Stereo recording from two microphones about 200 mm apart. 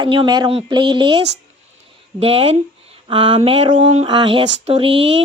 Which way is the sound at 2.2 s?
30° right (ahead or behind).